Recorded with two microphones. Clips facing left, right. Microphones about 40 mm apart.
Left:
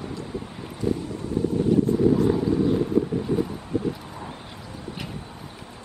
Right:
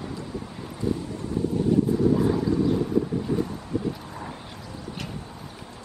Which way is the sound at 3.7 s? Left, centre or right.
Left.